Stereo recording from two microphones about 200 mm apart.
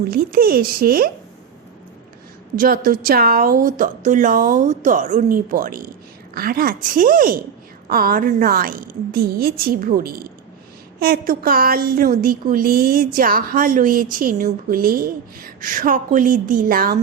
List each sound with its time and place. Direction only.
0.1 s a woman's voice: 50° right (ahead or behind)
2.6 s a woman's voice: 45° right (ahead or behind)